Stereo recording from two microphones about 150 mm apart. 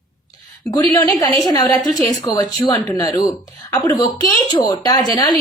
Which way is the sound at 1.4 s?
25° left (ahead or behind).